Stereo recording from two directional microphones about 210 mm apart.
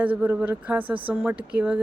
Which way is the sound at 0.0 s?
5° right (ahead or behind).